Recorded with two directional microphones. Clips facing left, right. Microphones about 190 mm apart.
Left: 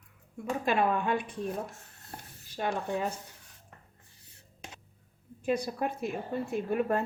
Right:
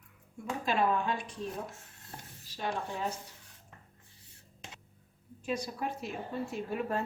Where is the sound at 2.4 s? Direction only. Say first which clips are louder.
Left 4 dB; 55° left (ahead or behind).